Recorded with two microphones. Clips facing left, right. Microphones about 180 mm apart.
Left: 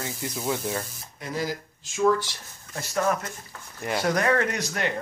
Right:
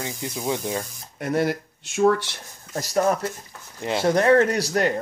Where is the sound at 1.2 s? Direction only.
60° right (ahead or behind).